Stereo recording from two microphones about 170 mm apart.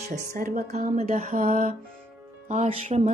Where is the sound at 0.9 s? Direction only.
40° right (ahead or behind).